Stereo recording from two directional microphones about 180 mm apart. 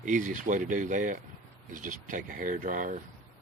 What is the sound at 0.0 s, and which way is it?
Speech, 45° right (ahead or behind).